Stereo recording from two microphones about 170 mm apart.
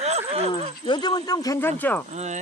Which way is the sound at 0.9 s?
25° left (ahead or behind).